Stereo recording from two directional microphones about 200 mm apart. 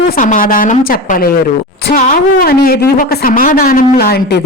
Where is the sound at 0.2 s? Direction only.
40° left (ahead or behind).